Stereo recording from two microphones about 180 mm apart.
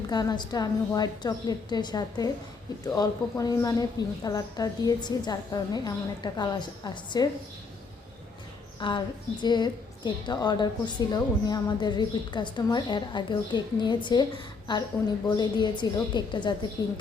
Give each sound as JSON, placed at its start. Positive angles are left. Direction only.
{"t": 0.1, "sound": "a woman's voice", "side_deg": 20}
{"t": 8.8, "sound": "a woman's voice", "side_deg": 25}